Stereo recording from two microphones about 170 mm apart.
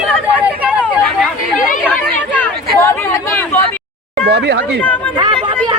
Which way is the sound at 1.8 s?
10° left (ahead or behind).